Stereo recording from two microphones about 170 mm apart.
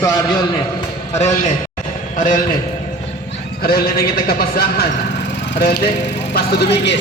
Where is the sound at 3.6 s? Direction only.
60° left (ahead or behind).